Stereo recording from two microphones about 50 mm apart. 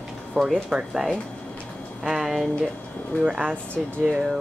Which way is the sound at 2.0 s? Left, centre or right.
Centre.